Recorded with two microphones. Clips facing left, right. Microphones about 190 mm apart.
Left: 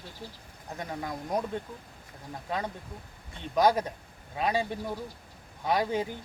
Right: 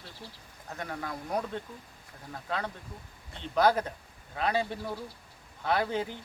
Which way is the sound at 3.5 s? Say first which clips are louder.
Left 1 dB; 15° left (ahead or behind).